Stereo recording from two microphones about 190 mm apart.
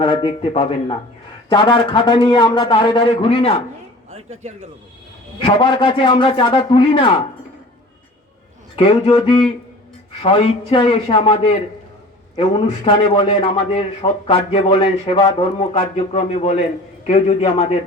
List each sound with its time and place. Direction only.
0.0 s a man's voice: 25° left (ahead or behind)
4.1 s a man's voice: 35° right (ahead or behind)
5.5 s a man's voice: 25° left (ahead or behind)
8.7 s a man's voice: 30° left (ahead or behind)